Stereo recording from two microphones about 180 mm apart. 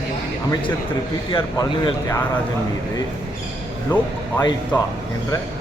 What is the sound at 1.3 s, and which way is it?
Speech, 25° left (ahead or behind).